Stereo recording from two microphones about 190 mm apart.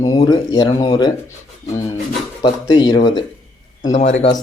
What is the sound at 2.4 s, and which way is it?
Speech, 25° left (ahead or behind).